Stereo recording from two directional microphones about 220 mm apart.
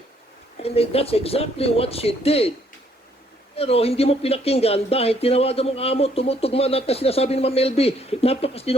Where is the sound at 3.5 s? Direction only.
25° left (ahead or behind).